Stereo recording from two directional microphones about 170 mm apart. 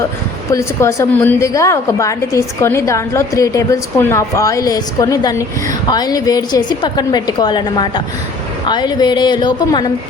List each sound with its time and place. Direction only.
0.5 s a woman's voice: 20° left (ahead or behind)